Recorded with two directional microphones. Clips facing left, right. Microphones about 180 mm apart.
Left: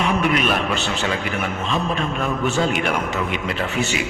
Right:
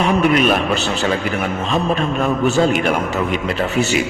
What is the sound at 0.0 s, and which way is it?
A man's voice, 40° right (ahead or behind).